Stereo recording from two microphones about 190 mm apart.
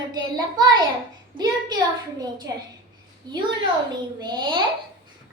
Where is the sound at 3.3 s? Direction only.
20° right (ahead or behind).